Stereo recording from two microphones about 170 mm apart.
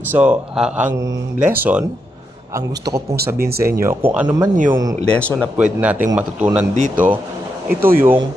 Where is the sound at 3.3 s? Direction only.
65° right (ahead or behind).